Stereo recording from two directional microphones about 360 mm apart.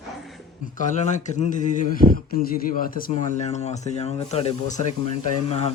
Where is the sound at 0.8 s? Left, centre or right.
Centre.